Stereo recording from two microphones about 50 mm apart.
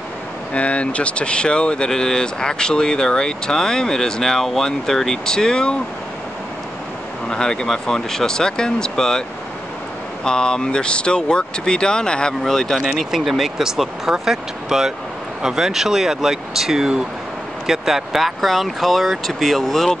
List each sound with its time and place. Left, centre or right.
0.5 s speech: left
7.2 s speech: centre
10.2 s speech: centre
12.8 s speech: centre